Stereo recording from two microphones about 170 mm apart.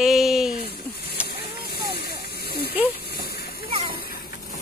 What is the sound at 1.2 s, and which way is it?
Hiss, 70° left (ahead or behind).